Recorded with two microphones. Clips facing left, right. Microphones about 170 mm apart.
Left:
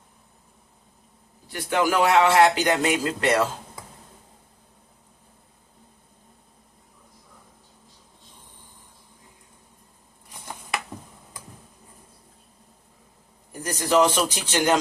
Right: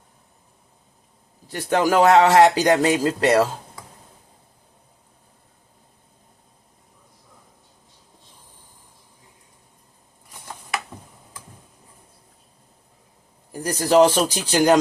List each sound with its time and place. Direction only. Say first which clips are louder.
1.5 s speech: right 3 dB; 40° right (ahead or behind)
13.6 s speech: right 5 dB; 30° right (ahead or behind)